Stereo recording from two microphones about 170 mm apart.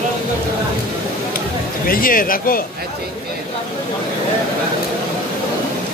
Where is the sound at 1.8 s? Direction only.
55° left (ahead or behind).